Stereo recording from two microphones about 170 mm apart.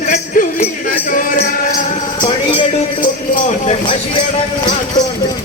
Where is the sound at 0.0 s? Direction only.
45° left (ahead or behind).